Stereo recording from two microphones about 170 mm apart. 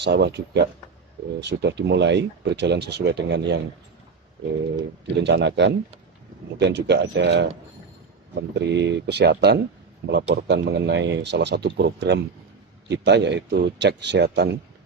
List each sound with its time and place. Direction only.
0.0 s a man's voice: 85° right
5.2 s a man's voice: 90° right
8.4 s a man's voice: 90° right; by 9.6 s 70° right (ahead or behind)
10.1 s a man's voice: 90° right